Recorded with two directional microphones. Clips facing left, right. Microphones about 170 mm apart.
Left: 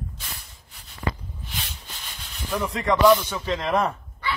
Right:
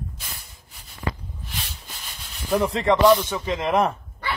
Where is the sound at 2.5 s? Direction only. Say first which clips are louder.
Right 4 dB; 30° right (ahead or behind).